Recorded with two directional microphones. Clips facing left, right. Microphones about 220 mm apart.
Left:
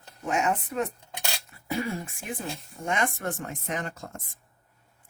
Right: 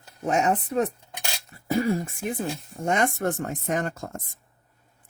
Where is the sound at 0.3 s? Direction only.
35° right (ahead or behind).